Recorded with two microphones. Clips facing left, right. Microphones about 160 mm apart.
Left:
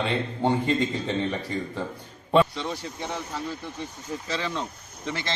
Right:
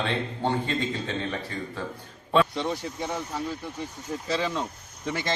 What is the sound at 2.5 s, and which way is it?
Speech, 15° right (ahead or behind).